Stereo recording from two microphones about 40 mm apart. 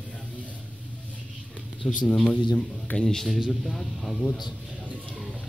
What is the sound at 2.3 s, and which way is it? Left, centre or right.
Speech, left.